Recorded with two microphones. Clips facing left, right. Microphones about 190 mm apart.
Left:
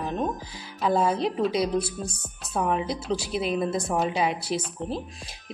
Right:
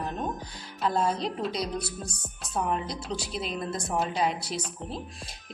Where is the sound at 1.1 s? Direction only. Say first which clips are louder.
Left 4 dB; 55° left (ahead or behind).